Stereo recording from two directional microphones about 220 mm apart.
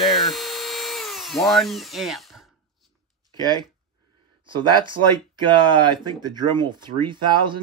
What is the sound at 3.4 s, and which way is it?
Speech, 20° right (ahead or behind).